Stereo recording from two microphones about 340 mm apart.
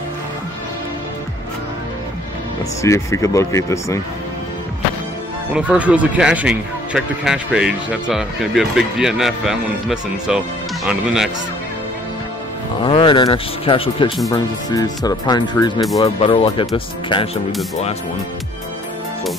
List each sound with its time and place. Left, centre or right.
2.8 s speech: centre
5.5 s speech: centre
12.8 s speech: centre